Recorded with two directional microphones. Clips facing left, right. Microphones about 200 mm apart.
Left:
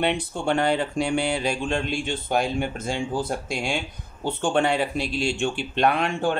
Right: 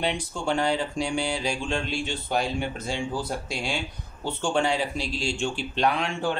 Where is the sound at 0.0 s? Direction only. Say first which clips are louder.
Left 4 dB; 60° left (ahead or behind).